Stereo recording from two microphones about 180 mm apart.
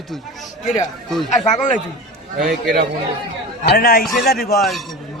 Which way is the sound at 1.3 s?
45° left (ahead or behind).